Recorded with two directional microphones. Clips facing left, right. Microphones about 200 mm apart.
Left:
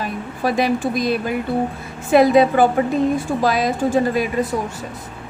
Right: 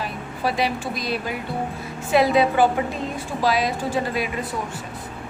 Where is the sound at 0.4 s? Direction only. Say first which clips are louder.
Left 5 dB; 50° left (ahead or behind).